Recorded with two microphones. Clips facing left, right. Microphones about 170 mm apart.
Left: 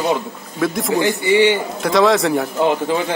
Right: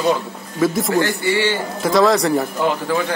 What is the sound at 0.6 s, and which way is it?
Speech, centre (ahead or behind).